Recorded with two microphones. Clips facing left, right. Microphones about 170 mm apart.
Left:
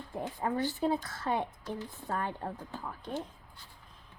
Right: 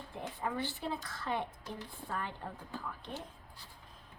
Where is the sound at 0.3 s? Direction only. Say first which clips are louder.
Left 6 dB; 40° left (ahead or behind).